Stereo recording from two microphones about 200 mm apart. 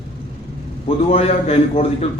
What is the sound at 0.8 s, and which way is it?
A man's voice, 30° left (ahead or behind).